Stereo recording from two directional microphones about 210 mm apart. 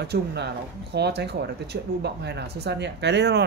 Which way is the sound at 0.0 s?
50° right (ahead or behind).